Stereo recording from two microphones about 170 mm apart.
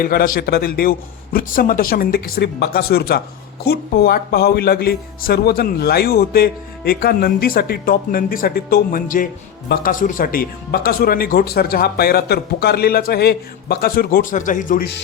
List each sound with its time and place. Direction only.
0.0 s a man's voice: 60° left (ahead or behind)